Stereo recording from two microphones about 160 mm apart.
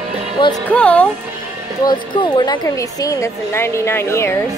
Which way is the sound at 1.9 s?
30° left (ahead or behind).